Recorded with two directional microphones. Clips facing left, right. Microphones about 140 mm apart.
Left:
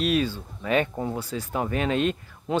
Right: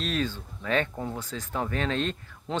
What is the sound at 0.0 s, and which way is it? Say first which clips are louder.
Speech: left 6 dB; 10° left (ahead or behind).